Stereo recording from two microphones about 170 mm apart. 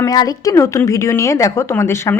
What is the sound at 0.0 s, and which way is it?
A woman's voice, 20° left (ahead or behind).